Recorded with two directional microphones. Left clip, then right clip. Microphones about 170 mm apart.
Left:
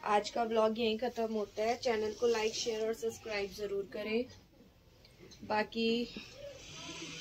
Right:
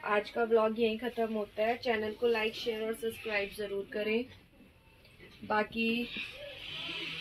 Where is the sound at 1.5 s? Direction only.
15° left (ahead or behind).